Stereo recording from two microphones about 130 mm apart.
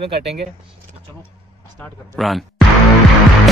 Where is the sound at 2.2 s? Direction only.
Centre (ahead or behind).